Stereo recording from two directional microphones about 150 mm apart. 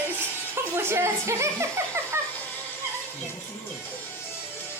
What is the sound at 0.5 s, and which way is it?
Music, 15° right (ahead or behind).